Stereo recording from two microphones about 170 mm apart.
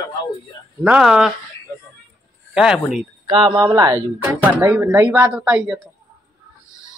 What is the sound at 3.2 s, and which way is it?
Speech, 30° right (ahead or behind).